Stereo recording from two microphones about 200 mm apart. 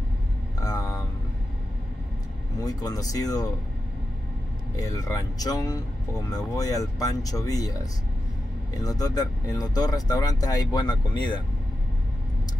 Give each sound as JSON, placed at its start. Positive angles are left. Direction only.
{"t": 2.6, "sound": "speech", "side_deg": 20}
{"t": 4.7, "sound": "speech", "side_deg": 15}